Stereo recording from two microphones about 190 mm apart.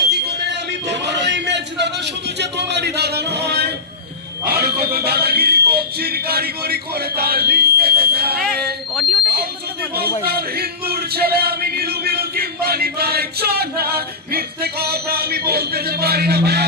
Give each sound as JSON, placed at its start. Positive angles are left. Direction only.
{"t": 0.9, "sound": "music", "side_deg": -65}
{"t": 2.4, "sound": "speech", "side_deg": -65}
{"t": 8.4, "sound": "speech", "side_deg": 0}
{"t": 9.9, "sound": "a sound", "side_deg": -55}